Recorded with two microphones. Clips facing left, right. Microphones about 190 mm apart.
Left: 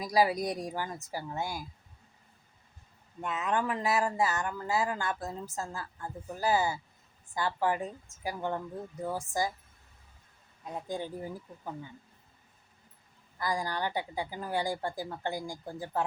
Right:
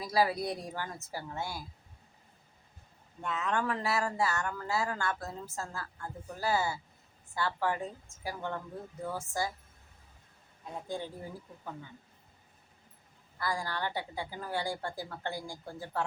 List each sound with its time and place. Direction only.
0.0 s speech: 15° left (ahead or behind)
3.2 s speech: 15° left (ahead or behind)
10.8 s speech: 15° left (ahead or behind)
13.4 s speech: 15° left (ahead or behind)